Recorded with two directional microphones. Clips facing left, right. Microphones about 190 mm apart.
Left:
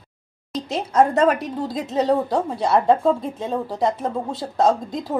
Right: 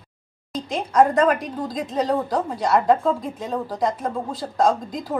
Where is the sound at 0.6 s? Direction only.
25° left (ahead or behind).